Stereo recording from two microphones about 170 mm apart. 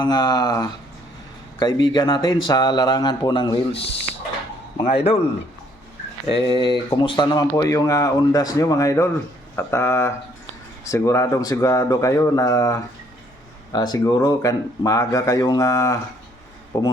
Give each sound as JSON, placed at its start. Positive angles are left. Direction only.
{"t": 0.0, "sound": "speech", "side_deg": 25}
{"t": 6.2, "sound": "speech", "side_deg": 25}